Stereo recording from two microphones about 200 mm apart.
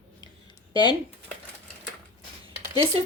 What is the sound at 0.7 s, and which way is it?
Speech, 20° left (ahead or behind).